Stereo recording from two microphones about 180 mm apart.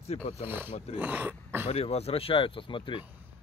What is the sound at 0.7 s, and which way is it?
Speech, 35° left (ahead or behind).